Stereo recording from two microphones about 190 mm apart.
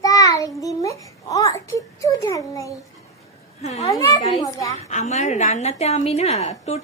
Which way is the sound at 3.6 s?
35° left (ahead or behind).